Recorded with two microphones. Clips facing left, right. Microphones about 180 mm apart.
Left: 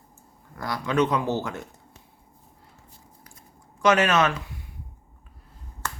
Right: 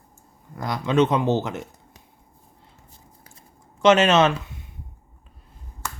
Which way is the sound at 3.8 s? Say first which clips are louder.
Right 4 dB; 25° right (ahead or behind).